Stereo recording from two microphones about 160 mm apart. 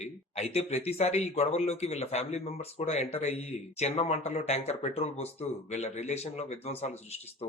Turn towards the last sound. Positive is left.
turn(degrees=40)  # may be behind; listen again after turning